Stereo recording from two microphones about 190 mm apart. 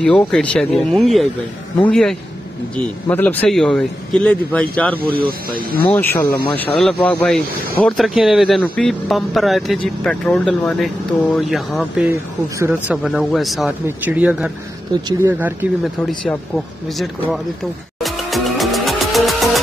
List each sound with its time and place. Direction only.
0.0 s speech: 5° left (ahead or behind)
5.0 s speech: 50° right (ahead or behind)
5.9 s speech: 10° left (ahead or behind)
12.1 s speech: 15° right (ahead or behind)
14.9 s speech: 20° right (ahead or behind)
15.3 s speech: 10° right (ahead or behind)
16.1 s speech: centre (ahead or behind)
18.0 s music: centre (ahead or behind)